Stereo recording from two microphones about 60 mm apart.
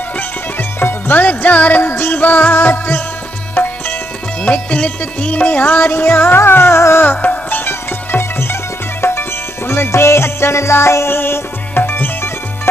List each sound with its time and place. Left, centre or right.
0.6 s music: left
1.2 s music: left
5.8 s music: left
7.1 s music: left